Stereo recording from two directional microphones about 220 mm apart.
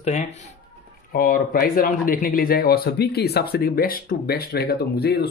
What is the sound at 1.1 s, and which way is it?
Speech, 40° left (ahead or behind).